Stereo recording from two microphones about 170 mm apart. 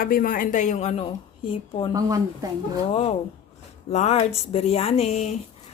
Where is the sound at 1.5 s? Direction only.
30° left (ahead or behind).